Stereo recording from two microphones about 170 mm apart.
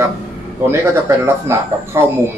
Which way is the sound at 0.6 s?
15° right (ahead or behind).